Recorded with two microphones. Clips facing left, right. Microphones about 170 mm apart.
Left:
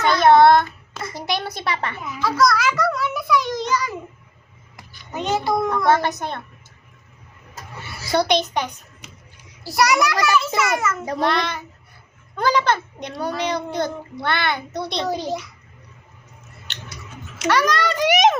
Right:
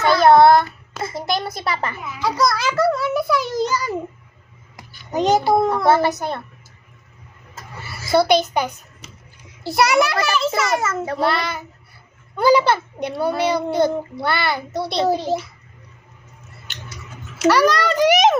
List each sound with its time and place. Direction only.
0.0 s child singing: centre (ahead or behind)
1.2 s a woman's voice: centre (ahead or behind)
2.4 s a child's voice: 30° right (ahead or behind)
5.1 s a child's voice: 35° right (ahead or behind)
5.8 s a woman's voice: 5° right (ahead or behind)
7.9 s a child's voice: 5° right (ahead or behind)
9.6 s a child's voice: 25° right (ahead or behind)
11.2 s a woman's voice: 5° right (ahead or behind)
15.0 s a child's voice: 30° right (ahead or behind)
17.3 s a child's voice: 5° right (ahead or behind)